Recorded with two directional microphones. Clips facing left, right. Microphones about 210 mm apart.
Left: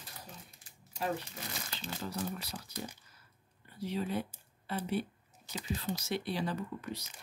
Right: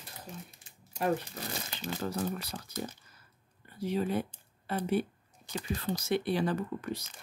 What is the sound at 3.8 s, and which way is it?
Speech, 50° right (ahead or behind).